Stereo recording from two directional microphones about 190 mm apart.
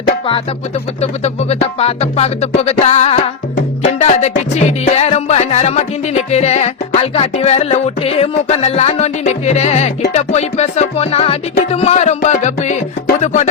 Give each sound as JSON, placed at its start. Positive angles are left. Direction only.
{"t": 1.0, "sound": "music", "side_deg": 35}